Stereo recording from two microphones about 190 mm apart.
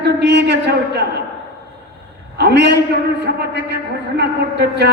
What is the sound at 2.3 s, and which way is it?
A man's voice, 60° right (ahead or behind).